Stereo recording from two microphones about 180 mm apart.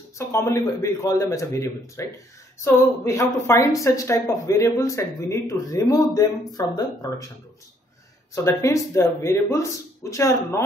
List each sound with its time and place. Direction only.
0.3 s speech: 15° left (ahead or behind)
8.5 s speech: 15° left (ahead or behind)